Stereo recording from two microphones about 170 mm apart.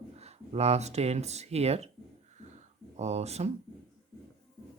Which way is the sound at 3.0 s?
40° right (ahead or behind).